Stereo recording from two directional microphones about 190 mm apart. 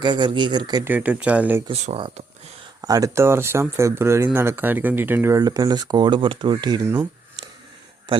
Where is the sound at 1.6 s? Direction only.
35° right (ahead or behind).